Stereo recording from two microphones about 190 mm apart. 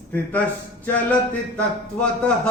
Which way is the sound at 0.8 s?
5° left (ahead or behind).